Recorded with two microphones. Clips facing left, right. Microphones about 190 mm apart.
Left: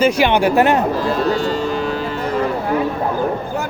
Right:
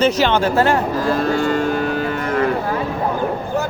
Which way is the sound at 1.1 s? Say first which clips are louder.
Even; 50° right (ahead or behind).